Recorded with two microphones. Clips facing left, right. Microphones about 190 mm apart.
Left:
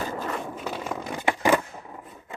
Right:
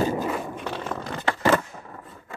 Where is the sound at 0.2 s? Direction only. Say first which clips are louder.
Right 3 dB; 5° right (ahead or behind).